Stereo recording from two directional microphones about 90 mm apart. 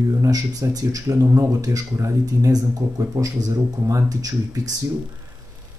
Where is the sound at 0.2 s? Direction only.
40° right (ahead or behind).